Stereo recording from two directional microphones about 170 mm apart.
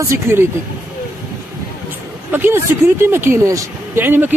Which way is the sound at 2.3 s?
15° right (ahead or behind).